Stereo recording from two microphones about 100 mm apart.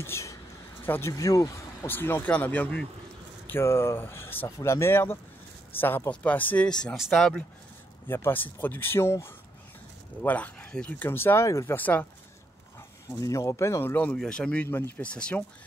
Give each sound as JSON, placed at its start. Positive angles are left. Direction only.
{"t": 0.0, "sound": "speech", "side_deg": 30}
{"t": 1.1, "sound": "speech", "side_deg": 35}
{"t": 1.9, "sound": "speech", "side_deg": 20}
{"t": 3.4, "sound": "speech", "side_deg": 25}
{"t": 7.0, "sound": "speech", "side_deg": 0}
{"t": 8.1, "sound": "speech", "side_deg": 20}
{"t": 11.7, "sound": "speech", "side_deg": 15}
{"t": 13.2, "sound": "speech", "side_deg": 35}
{"t": 14.1, "sound": "speech", "side_deg": 5}